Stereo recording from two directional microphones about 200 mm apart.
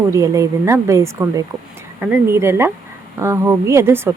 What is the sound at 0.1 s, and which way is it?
Speech, 15° right (ahead or behind).